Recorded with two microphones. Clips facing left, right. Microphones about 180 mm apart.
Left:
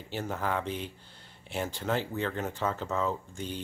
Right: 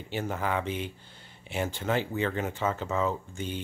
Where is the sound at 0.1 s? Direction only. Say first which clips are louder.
Right 2 dB; centre (ahead or behind).